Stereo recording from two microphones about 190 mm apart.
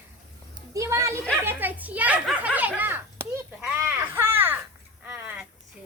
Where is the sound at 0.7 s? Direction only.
15° right (ahead or behind).